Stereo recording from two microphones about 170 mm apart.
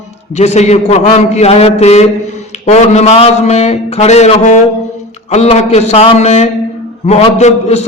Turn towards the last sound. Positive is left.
turn(degrees=40)  # may be behind; listen again after turning